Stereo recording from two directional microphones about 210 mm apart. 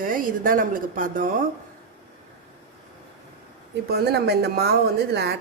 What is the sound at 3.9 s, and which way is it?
Speech, 50° right (ahead or behind).